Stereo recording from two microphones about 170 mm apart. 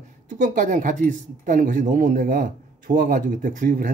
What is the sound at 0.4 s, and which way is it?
Speech, 50° right (ahead or behind).